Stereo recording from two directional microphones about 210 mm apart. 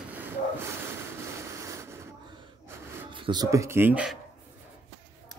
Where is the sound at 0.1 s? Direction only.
10° right (ahead or behind).